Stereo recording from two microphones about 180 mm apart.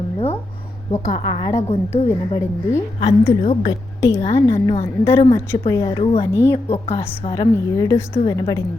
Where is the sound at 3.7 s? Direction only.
15° left (ahead or behind).